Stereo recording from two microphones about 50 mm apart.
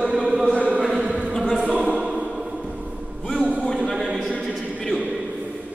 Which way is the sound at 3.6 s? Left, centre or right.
Centre.